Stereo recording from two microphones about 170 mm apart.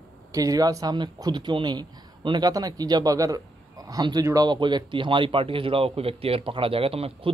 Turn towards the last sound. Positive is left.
turn(degrees=-35)  # may be behind; listen again after turning